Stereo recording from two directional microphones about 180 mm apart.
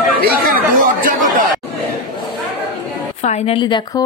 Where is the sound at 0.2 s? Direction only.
55° right (ahead or behind).